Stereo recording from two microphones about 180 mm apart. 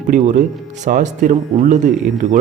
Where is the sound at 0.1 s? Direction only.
45° right (ahead or behind).